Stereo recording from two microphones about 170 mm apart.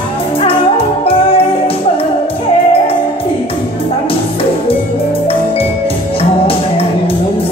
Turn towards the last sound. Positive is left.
turn(degrees=35)  # may be behind; listen again after turning